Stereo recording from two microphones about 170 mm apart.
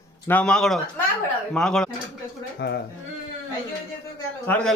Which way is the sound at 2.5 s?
75° left (ahead or behind).